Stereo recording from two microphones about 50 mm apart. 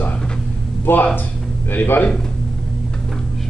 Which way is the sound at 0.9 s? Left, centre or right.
Left.